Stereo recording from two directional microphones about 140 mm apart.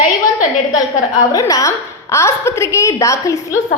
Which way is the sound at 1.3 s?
25° left (ahead or behind).